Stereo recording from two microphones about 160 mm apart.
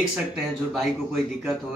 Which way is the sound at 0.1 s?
Centre (ahead or behind).